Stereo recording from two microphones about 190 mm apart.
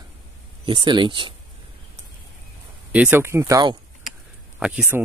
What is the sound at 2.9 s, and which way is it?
Speech, 10° right (ahead or behind).